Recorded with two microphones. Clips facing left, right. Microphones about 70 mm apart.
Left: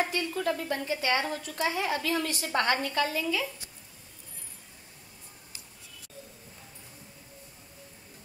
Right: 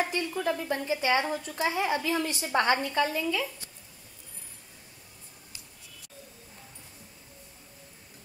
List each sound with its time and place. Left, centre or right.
0.0 s a woman's voice: centre